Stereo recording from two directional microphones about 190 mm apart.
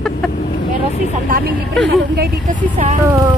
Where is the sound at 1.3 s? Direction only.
45° right (ahead or behind).